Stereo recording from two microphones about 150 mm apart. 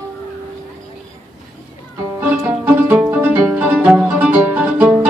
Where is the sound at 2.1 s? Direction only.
15° right (ahead or behind).